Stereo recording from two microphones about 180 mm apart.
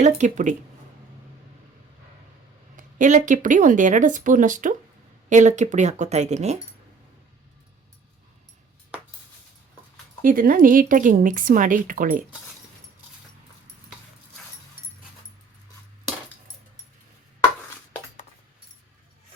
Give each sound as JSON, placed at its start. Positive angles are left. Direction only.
{"t": 0.0, "sound": "speech", "side_deg": -40}
{"t": 2.7, "sound": "speech", "side_deg": -45}
{"t": 10.2, "sound": "speech", "side_deg": -50}